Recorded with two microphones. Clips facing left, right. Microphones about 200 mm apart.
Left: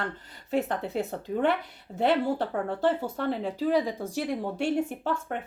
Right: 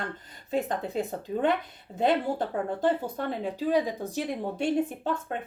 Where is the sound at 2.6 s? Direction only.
15° right (ahead or behind).